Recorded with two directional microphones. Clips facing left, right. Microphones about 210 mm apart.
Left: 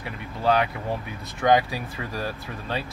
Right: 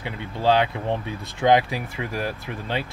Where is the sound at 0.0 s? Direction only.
25° right (ahead or behind).